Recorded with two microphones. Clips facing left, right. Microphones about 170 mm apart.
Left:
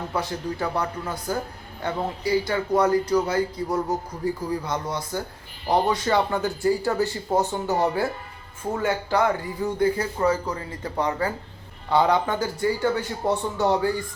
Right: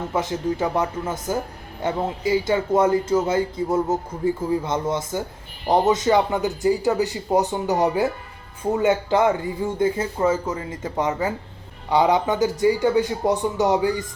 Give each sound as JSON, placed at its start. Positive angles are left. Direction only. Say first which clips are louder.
{"t": 0.1, "sound": "speech", "louder": "right 6 dB", "side_deg": -20}